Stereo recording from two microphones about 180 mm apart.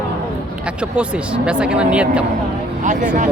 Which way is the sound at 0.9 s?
5° right (ahead or behind).